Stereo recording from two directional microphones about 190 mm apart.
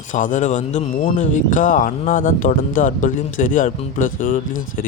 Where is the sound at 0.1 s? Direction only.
45° left (ahead or behind).